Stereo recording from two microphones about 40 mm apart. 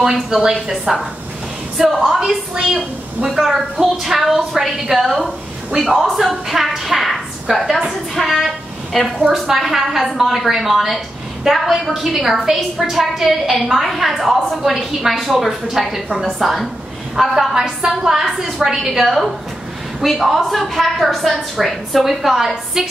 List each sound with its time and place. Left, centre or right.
0.3 s a woman's voice: centre
2.5 s a woman's voice: right
3.3 s a woman's voice: centre
7.0 s a sound: centre
8.1 s a woman's voice: centre
14.6 s a woman's voice: centre
18.2 s a woman's voice: centre
18.6 s a woman's voice: centre
19.0 s a woman's voice: centre